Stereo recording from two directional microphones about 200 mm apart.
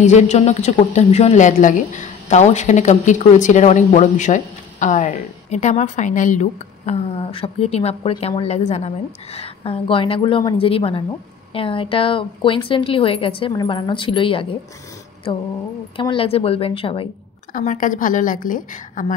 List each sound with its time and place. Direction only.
0.0 s a woman's voice: 35° left (ahead or behind)
17.5 s speech: 40° left (ahead or behind)